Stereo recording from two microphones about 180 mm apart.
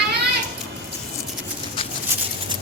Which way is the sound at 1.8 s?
30° left (ahead or behind).